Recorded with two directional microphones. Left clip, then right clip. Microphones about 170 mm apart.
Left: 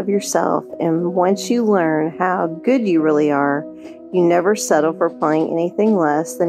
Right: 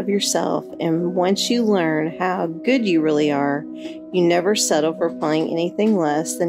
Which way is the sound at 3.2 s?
25° right (ahead or behind).